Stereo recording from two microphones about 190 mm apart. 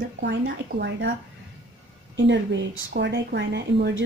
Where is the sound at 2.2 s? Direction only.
70° right (ahead or behind).